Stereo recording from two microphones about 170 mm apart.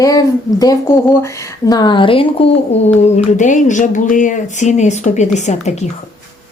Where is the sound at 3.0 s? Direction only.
45° left (ahead or behind).